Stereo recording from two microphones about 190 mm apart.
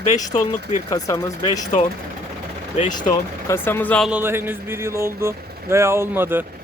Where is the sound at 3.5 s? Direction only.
10° left (ahead or behind).